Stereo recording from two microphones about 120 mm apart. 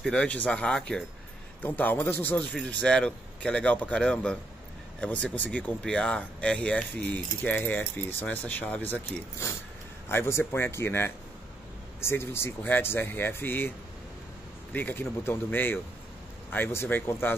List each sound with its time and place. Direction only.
0.0 s speech: 10° left (ahead or behind)
10.0 s speech: 20° left (ahead or behind)